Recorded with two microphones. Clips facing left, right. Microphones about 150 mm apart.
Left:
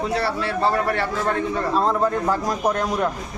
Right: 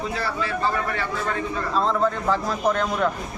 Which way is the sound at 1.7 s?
10° left (ahead or behind).